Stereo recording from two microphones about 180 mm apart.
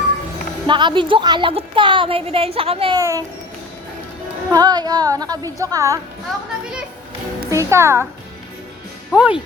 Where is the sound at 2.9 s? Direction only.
20° right (ahead or behind).